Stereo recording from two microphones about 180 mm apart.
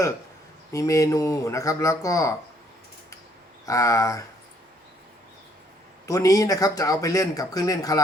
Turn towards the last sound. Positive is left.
turn(degrees=20)  # may be behind; listen again after turning